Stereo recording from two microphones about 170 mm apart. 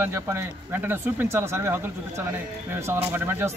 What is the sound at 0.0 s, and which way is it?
Speech, 15° right (ahead or behind).